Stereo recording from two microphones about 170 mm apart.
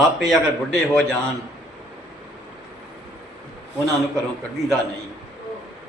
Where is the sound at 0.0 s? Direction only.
Centre (ahead or behind).